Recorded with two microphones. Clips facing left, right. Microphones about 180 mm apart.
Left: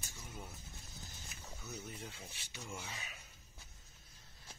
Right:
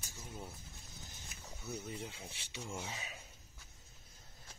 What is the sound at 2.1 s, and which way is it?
Speech, 25° right (ahead or behind).